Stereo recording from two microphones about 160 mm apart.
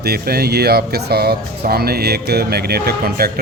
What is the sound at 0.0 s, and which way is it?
Speech, 75° right (ahead or behind).